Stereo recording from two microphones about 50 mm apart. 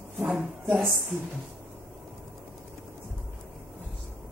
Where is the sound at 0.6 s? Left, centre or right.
Right.